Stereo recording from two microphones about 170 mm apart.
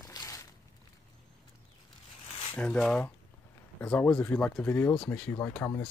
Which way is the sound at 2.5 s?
5° left (ahead or behind).